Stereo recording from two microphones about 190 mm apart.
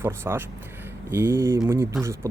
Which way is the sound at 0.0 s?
10° right (ahead or behind).